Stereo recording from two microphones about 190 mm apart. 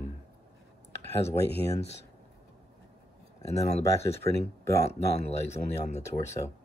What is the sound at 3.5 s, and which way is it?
Speech, 35° left (ahead or behind).